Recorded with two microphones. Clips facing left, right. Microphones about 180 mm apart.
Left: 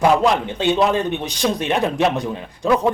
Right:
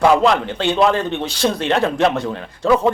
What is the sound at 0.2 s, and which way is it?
A man's voice, 15° left (ahead or behind).